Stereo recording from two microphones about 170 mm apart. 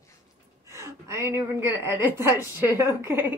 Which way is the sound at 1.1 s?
15° right (ahead or behind).